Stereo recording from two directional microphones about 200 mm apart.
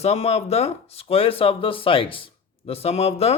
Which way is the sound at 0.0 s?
30° left (ahead or behind).